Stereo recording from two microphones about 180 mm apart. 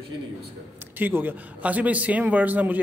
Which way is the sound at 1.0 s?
10° right (ahead or behind).